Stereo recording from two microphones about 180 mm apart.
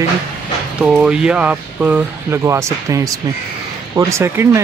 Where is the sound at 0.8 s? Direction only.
5° right (ahead or behind).